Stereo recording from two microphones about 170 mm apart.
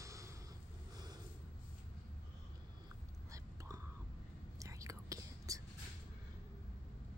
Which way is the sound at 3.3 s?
20° right (ahead or behind).